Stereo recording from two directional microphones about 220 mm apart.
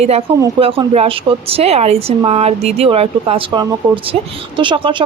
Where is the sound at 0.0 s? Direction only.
30° right (ahead or behind).